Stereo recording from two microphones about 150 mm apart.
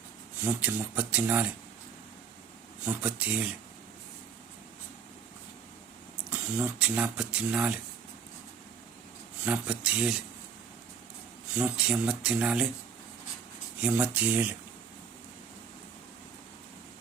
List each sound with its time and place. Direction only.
0.4 s speech: 10° right (ahead or behind)
2.8 s speech: 10° right (ahead or behind)
6.3 s speech: 10° right (ahead or behind)
9.4 s speech: 10° right (ahead or behind)
11.5 s speech: 5° right (ahead or behind)
13.8 s speech: 10° right (ahead or behind)